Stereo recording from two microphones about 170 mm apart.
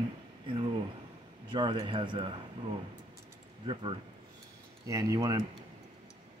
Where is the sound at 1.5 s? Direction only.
30° right (ahead or behind).